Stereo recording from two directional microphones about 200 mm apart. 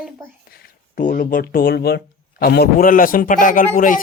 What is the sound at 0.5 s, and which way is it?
Speech, 45° left (ahead or behind).